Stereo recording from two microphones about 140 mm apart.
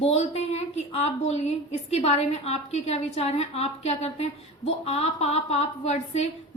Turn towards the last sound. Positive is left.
turn(degrees=50)  # may be behind; listen again after turning